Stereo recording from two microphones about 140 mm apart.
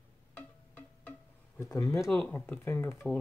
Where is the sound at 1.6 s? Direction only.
20° left (ahead or behind).